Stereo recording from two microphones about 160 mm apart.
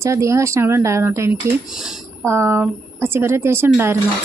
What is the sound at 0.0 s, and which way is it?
Speech, 20° right (ahead or behind).